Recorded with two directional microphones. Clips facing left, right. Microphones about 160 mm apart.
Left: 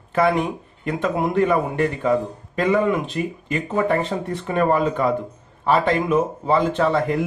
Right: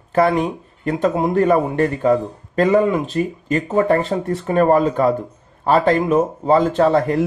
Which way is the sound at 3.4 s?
40° right (ahead or behind).